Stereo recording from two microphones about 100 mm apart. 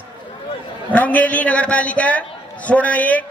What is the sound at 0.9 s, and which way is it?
A man's voice, 15° left (ahead or behind).